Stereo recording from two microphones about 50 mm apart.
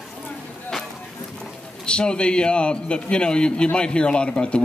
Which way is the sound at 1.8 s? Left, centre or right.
Centre.